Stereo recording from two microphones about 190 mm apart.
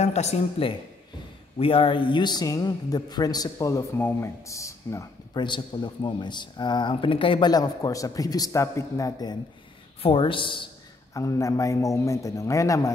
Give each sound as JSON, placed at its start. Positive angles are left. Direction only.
{"t": 0.0, "sound": "a man's voice", "side_deg": 35}